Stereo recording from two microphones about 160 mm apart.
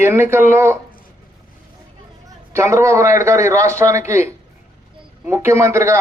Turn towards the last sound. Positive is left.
turn(degrees=-15)  # may be behind; listen again after turning